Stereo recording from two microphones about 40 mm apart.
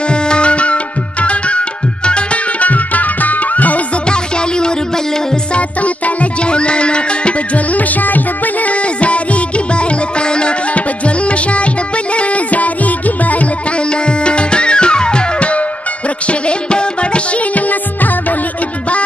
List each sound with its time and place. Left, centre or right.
0.1 s music: left
2.6 s music: left
4.1 s music: left
5.5 s music: left
7.7 s music: left
8.6 s music: left
14.0 s music: left
17.6 s music: left